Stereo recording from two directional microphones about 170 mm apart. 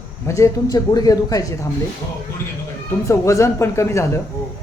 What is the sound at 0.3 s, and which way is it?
A man's voice, 20° left (ahead or behind).